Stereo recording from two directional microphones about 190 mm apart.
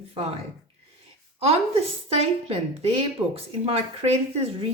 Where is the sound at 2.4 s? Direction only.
30° right (ahead or behind).